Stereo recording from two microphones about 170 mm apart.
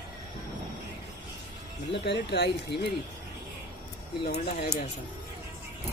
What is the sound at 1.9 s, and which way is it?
Speech, 90° left.